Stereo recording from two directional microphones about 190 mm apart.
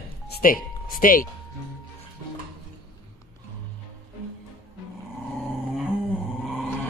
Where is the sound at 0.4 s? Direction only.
45° left (ahead or behind).